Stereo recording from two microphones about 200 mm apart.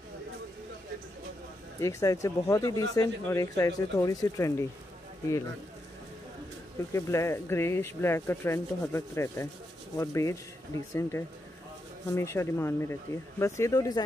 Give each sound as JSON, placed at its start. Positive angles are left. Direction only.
{"t": 1.8, "sound": "speech", "side_deg": 15}
{"t": 6.9, "sound": "speech", "side_deg": 15}